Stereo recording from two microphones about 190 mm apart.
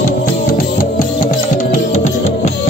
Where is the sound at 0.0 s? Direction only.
45° left (ahead or behind).